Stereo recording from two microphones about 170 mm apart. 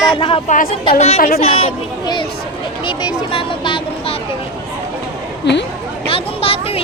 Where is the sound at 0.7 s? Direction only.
35° left (ahead or behind).